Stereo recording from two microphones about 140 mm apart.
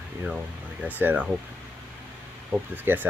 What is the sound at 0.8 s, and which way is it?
Speech, 10° right (ahead or behind).